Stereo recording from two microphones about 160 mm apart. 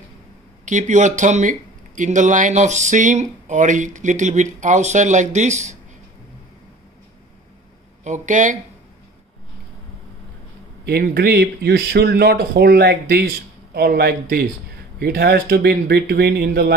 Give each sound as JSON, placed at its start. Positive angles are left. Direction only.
{"t": 0.7, "sound": "speech", "side_deg": -50}
{"t": 8.0, "sound": "speech", "side_deg": -50}
{"t": 10.9, "sound": "speech", "side_deg": -75}
{"t": 13.7, "sound": "speech", "side_deg": -75}